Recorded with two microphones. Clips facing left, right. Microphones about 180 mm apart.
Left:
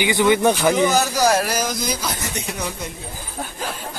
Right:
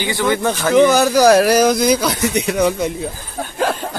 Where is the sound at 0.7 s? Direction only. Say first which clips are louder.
Right 7 dB; 65° right (ahead or behind).